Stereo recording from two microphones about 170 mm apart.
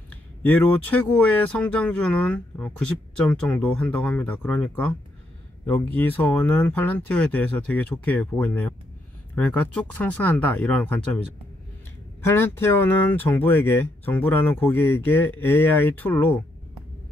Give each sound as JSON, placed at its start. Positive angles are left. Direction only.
{"t": 0.1, "sound": "speech", "side_deg": 10}
{"t": 12.2, "sound": "speech", "side_deg": 15}